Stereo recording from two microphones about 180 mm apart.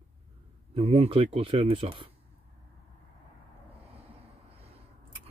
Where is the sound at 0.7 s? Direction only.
35° right (ahead or behind).